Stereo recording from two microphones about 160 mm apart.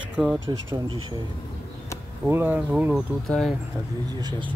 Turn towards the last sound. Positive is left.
turn(degrees=-25)  # may be behind; listen again after turning